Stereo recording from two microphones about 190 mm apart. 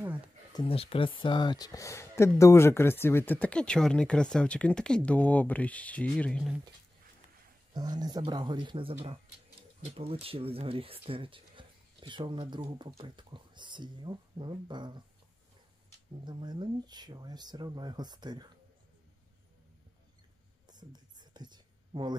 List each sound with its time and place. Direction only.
0.6 s speech: 30° left (ahead or behind); by 6.5 s 5° left (ahead or behind)
7.7 s speech: 20° right (ahead or behind)
16.3 s speech: 25° right (ahead or behind)
20.6 s whispering: 20° right (ahead or behind)